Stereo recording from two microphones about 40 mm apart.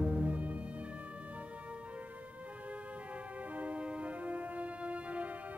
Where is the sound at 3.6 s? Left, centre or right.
Right.